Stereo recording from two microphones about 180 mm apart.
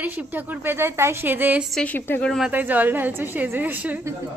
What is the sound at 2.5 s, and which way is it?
A woman's voice, 10° right (ahead or behind).